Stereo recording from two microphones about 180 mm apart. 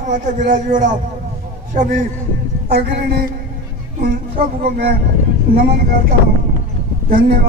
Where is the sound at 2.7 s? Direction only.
60° right (ahead or behind).